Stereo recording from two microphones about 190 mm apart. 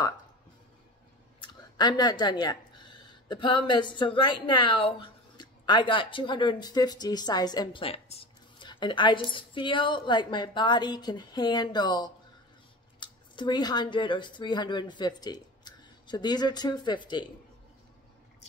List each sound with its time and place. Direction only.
1.4 s speech: 25° left (ahead or behind)